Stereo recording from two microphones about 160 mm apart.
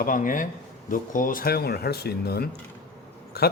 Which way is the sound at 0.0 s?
55° left (ahead or behind).